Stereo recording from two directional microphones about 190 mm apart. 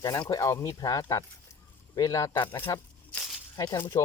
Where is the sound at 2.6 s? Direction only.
10° left (ahead or behind).